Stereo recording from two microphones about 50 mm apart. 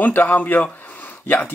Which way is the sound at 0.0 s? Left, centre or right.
Left.